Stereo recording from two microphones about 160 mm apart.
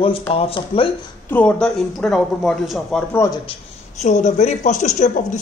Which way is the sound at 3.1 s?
20° left (ahead or behind).